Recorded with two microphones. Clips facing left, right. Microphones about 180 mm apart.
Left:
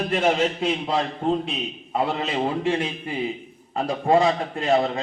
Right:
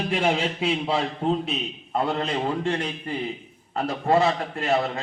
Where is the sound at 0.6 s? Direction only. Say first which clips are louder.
Left 1 dB; 5° right (ahead or behind).